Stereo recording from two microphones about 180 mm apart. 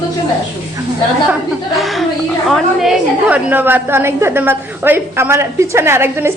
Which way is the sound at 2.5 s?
Centre (ahead or behind).